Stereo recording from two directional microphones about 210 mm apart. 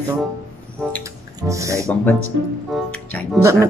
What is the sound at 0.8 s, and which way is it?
Music, centre (ahead or behind).